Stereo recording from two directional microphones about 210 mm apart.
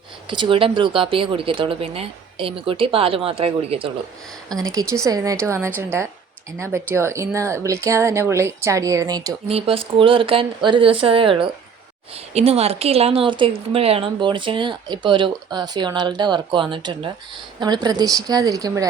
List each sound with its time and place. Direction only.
0.3 s speech: 25° right (ahead or behind)
4.7 s a woman's voice: 15° right (ahead or behind)
6.9 s a woman's voice: 15° right (ahead or behind)